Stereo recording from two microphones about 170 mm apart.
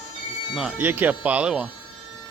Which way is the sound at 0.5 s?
5° right (ahead or behind).